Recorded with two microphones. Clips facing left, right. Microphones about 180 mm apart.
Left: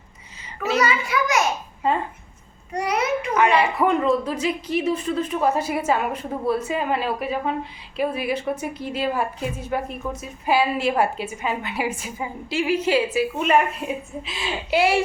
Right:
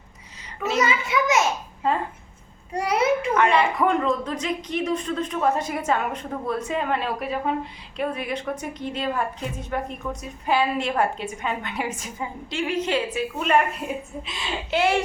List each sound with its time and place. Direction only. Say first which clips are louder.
0.4 s a child's voice: left 3 dB; centre (ahead or behind)
0.8 s a child's voice: even; 20° right (ahead or behind)
2.7 s a child's voice: right 1 dB; 30° right (ahead or behind)
3.3 s a woman's voice: left 1 dB; 5° left (ahead or behind)